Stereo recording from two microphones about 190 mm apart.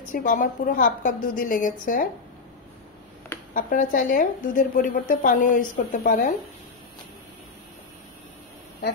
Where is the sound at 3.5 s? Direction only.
45° left (ahead or behind).